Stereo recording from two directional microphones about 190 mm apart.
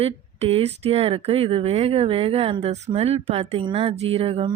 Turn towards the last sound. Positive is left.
turn(degrees=-30)  # may be behind; listen again after turning